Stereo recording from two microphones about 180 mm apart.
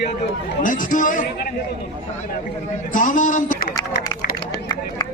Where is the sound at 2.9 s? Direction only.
45° left (ahead or behind).